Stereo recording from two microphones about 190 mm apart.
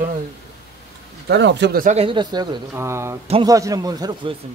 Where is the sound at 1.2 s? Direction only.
70° right (ahead or behind).